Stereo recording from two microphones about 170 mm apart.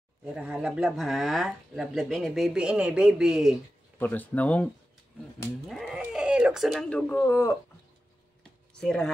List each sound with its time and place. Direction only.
0.2 s speech: 5° right (ahead or behind)
4.0 s speech: 10° left (ahead or behind)
5.7 s speech: centre (ahead or behind); by 7.5 s 15° left (ahead or behind)
8.7 s speech: 5° left (ahead or behind)